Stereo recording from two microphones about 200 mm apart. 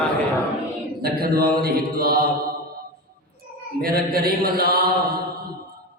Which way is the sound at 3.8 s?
50° right (ahead or behind).